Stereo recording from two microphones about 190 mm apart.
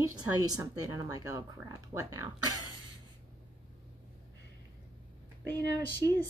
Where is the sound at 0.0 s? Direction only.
20° right (ahead or behind).